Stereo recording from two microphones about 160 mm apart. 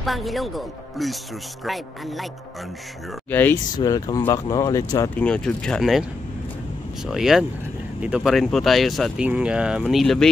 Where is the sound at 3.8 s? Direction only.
25° left (ahead or behind).